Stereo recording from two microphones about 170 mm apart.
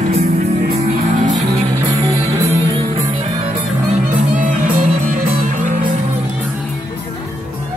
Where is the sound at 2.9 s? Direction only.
35° right (ahead or behind); by 6.0 s 50° right (ahead or behind).